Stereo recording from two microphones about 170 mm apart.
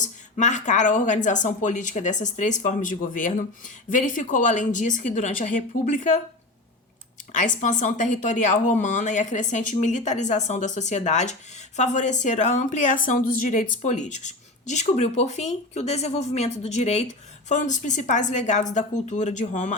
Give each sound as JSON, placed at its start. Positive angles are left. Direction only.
{"t": 0.0, "sound": "speech", "side_deg": 45}
{"t": 7.3, "sound": "speech", "side_deg": 50}